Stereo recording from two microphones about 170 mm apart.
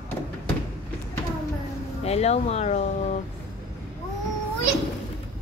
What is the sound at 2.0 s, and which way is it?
Speech, 40° left (ahead or behind).